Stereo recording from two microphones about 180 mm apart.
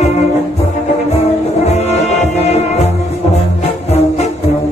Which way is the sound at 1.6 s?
35° left (ahead or behind).